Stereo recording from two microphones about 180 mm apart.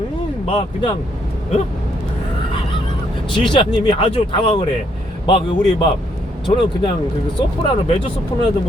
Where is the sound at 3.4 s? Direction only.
25° left (ahead or behind).